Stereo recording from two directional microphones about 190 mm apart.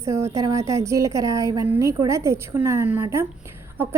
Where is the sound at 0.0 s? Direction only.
15° right (ahead or behind).